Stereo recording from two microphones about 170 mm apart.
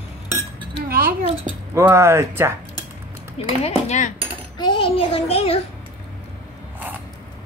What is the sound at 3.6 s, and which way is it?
Speech, 45° left (ahead or behind).